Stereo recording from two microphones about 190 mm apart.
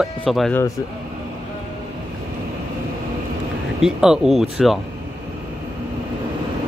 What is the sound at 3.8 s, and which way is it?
Speech, 5° right (ahead or behind).